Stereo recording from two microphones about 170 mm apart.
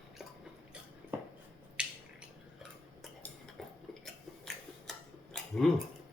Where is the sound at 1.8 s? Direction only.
5° right (ahead or behind).